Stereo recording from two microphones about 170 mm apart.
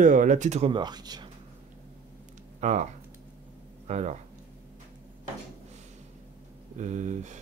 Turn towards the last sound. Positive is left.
turn(degrees=-45)  # may be behind; listen again after turning